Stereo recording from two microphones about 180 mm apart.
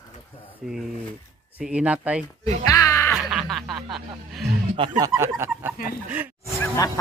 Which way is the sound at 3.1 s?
Centre (ahead or behind).